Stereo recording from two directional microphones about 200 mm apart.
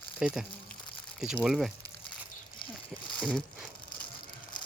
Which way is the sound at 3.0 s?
5° left (ahead or behind).